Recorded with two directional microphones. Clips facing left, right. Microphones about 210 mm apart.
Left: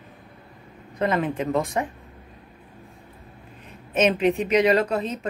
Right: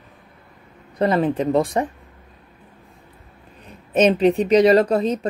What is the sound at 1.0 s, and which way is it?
Speech, 35° right (ahead or behind).